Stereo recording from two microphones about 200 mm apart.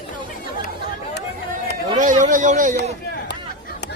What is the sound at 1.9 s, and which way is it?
Speech, 40° right (ahead or behind).